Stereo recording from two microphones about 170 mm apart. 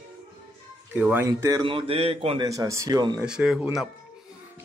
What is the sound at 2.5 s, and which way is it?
Speech, 20° right (ahead or behind).